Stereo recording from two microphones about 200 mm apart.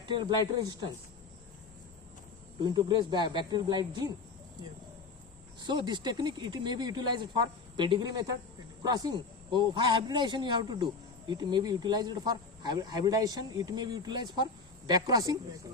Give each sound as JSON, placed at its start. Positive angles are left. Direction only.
{"t": 0.0, "sound": "speech", "side_deg": -25}
{"t": 2.6, "sound": "speech", "side_deg": -20}
{"t": 5.6, "sound": "speech", "side_deg": -20}